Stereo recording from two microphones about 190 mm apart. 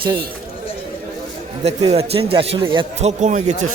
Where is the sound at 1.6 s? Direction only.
35° right (ahead or behind).